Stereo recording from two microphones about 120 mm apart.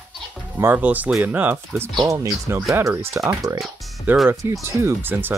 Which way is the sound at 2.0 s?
30° right (ahead or behind).